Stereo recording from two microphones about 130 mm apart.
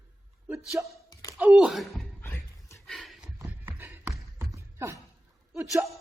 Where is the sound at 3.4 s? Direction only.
15° right (ahead or behind).